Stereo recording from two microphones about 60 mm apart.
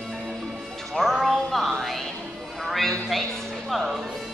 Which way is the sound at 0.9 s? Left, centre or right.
Centre.